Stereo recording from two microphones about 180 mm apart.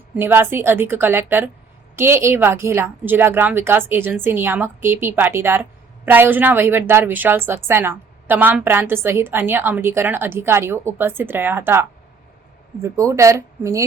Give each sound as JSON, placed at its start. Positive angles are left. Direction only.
{"t": 0.2, "sound": "a woman's voice", "side_deg": -10}